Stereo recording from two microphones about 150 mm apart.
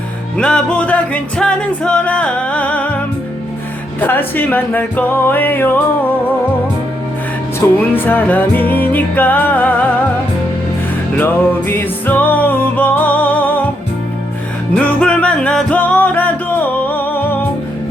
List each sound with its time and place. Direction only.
0.3 s music: 5° left (ahead or behind)
4.0 s music: 10° left (ahead or behind)
7.6 s music: 15° left (ahead or behind)
11.2 s music: 15° left (ahead or behind)
14.8 s music: 5° left (ahead or behind)